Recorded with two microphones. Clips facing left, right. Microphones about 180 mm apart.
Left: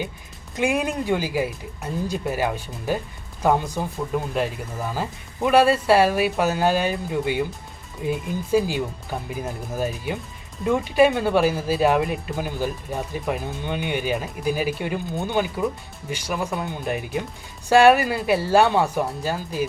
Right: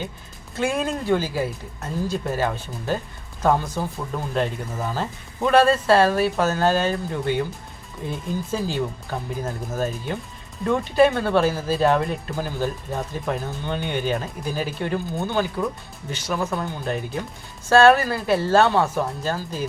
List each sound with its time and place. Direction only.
0.5 s speech: 15° left (ahead or behind)